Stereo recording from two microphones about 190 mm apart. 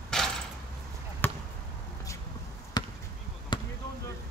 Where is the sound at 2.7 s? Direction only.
20° left (ahead or behind).